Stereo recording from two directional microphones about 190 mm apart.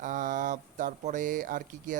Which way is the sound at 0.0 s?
45° right (ahead or behind).